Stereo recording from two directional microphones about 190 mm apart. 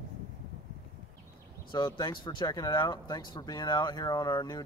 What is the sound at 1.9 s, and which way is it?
Speech, 20° left (ahead or behind).